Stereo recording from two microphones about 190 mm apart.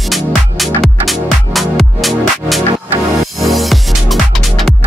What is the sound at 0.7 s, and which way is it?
Music, centre (ahead or behind).